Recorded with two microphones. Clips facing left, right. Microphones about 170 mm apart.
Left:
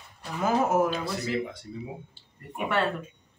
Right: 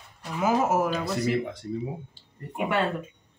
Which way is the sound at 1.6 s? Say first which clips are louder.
Right 8 dB; 45° right (ahead or behind).